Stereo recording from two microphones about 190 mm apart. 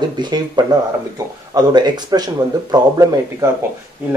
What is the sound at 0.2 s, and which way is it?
A man's voice, 20° right (ahead or behind).